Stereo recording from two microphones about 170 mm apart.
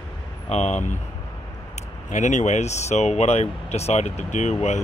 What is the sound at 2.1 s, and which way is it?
Speech, 45° left (ahead or behind).